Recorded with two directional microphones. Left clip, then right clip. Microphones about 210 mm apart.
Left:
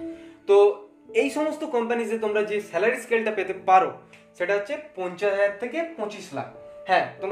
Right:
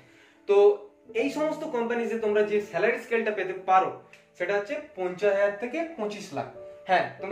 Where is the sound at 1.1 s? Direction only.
50° left (ahead or behind).